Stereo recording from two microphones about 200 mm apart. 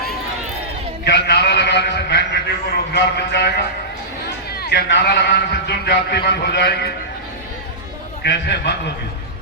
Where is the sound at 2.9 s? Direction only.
55° left (ahead or behind).